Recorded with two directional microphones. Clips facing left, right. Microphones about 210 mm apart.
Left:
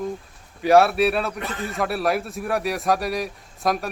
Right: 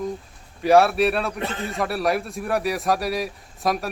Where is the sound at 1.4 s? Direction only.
30° right (ahead or behind).